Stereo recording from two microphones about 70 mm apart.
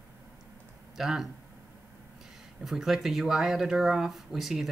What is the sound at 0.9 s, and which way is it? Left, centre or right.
Speech, centre.